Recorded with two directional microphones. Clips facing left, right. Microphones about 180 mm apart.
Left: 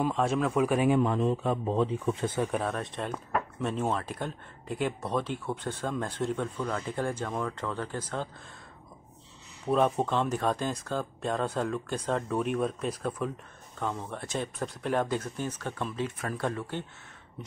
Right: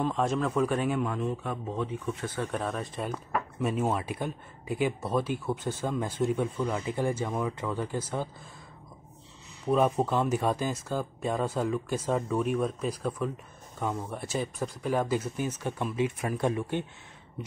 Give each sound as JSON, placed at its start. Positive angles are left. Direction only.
{"t": 0.0, "sound": "speech", "side_deg": 5}
{"t": 0.9, "sound": "speech", "side_deg": 30}
{"t": 2.4, "sound": "speech", "side_deg": 5}
{"t": 9.7, "sound": "speech", "side_deg": -5}